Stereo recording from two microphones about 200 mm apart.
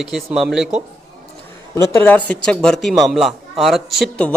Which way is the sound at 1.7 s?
15° left (ahead or behind).